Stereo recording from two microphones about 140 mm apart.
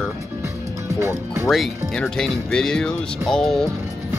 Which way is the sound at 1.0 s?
20° right (ahead or behind).